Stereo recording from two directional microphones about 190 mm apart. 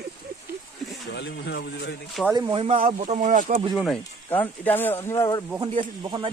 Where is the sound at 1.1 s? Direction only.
65° left (ahead or behind).